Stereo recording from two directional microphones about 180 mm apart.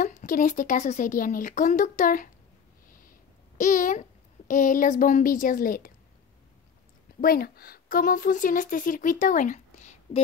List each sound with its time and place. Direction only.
0.0 s speech: 45° left (ahead or behind)
3.5 s a child's voice: 45° left (ahead or behind)
7.2 s speech: 55° left (ahead or behind)